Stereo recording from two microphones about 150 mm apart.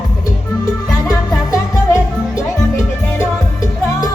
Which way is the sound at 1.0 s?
25° left (ahead or behind).